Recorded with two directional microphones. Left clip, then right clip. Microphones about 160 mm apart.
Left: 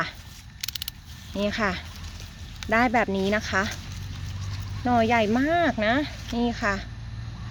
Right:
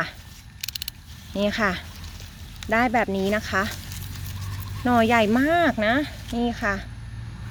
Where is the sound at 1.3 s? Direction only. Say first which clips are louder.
Right 3 dB; 25° right (ahead or behind).